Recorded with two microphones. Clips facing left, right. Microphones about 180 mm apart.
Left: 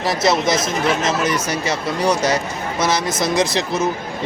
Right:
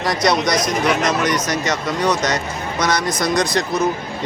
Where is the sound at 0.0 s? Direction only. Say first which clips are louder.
Even; 5° left (ahead or behind).